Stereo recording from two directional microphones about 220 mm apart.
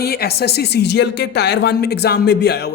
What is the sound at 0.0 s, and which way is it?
Speech, 45° left (ahead or behind).